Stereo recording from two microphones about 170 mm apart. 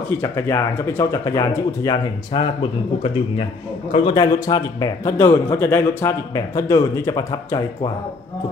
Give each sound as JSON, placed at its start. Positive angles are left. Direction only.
{"t": 0.2, "sound": "speech", "side_deg": 15}
{"t": 3.9, "sound": "a man's voice", "side_deg": 25}